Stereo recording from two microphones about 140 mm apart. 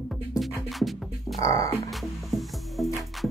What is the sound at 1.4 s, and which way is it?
Speech, 25° left (ahead or behind).